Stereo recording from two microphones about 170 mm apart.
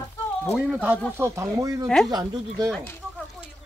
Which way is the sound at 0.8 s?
15° right (ahead or behind).